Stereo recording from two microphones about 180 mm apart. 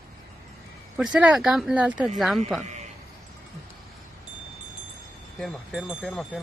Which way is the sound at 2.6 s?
40° right (ahead or behind).